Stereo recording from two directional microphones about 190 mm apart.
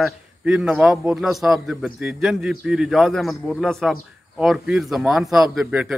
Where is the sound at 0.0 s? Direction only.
5° right (ahead or behind).